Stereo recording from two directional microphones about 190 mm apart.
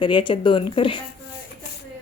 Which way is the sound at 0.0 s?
25° left (ahead or behind).